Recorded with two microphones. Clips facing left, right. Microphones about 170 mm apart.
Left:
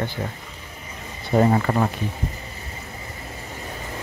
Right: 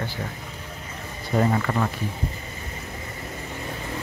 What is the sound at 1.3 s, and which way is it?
Speech, 30° left (ahead or behind).